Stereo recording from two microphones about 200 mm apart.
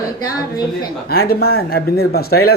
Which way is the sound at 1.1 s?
50° left (ahead or behind).